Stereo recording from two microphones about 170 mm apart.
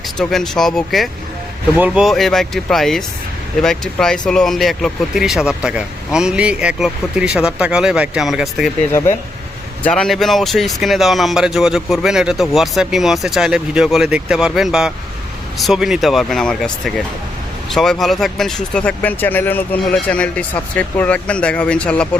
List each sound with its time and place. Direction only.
0.2 s speech: centre (ahead or behind)
8.8 s speech: 15° left (ahead or behind)
9.8 s speech: 5° left (ahead or behind)